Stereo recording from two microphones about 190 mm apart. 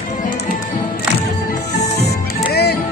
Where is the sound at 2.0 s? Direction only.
60° left (ahead or behind).